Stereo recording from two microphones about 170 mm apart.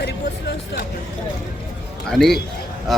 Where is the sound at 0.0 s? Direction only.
75° left (ahead or behind).